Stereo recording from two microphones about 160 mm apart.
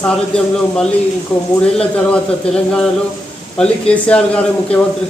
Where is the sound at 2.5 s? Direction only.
40° left (ahead or behind).